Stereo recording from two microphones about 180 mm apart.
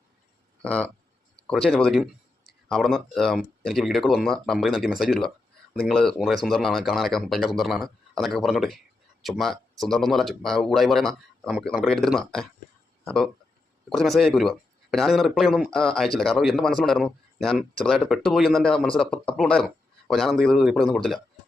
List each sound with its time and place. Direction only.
0.6 s speech: 5° left (ahead or behind)